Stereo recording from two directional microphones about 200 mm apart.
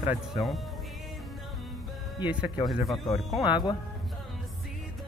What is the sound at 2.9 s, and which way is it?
Speech, 25° left (ahead or behind).